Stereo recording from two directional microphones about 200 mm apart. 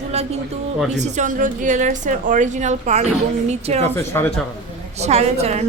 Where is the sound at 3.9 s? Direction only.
10° left (ahead or behind).